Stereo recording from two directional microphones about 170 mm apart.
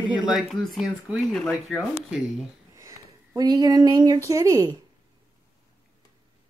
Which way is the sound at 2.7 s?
15° right (ahead or behind).